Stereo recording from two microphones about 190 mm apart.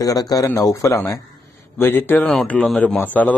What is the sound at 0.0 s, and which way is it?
A man's voice, 20° left (ahead or behind).